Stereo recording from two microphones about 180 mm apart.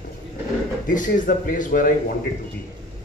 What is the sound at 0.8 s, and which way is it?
Speech, 45° left (ahead or behind).